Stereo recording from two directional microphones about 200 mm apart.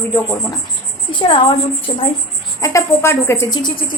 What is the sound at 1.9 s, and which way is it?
Speech, 25° left (ahead or behind).